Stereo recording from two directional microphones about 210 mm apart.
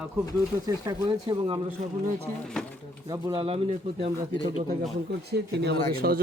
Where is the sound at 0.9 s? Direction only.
20° right (ahead or behind).